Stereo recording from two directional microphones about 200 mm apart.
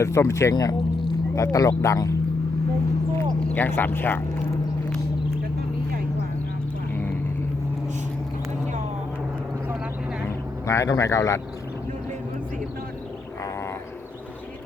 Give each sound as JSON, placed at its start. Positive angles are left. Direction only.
{"t": 0.0, "sound": "speech", "side_deg": 15}
{"t": 3.2, "sound": "speech", "side_deg": 10}
{"t": 6.9, "sound": "vehicle", "side_deg": 10}
{"t": 10.2, "sound": "vehicle", "side_deg": 15}